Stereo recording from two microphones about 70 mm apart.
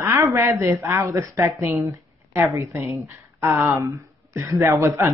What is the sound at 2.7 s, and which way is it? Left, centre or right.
Speech, right.